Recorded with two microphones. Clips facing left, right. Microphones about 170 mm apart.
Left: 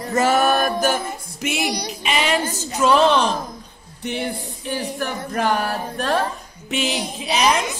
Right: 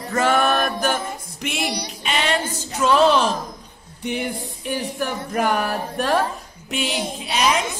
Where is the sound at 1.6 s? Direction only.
45° left (ahead or behind).